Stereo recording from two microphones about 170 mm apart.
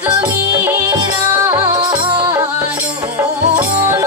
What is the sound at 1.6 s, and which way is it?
Music, 25° right (ahead or behind).